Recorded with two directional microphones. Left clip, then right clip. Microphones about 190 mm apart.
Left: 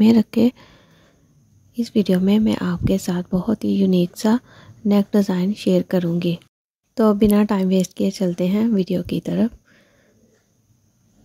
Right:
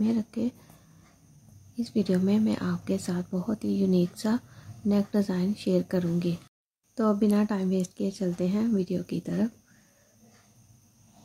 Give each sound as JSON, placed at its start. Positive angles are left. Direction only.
{"t": 0.0, "sound": "speech", "side_deg": 50}
{"t": 1.8, "sound": "speech", "side_deg": 40}